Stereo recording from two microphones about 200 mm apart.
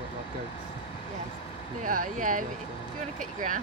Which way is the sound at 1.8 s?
45° right (ahead or behind).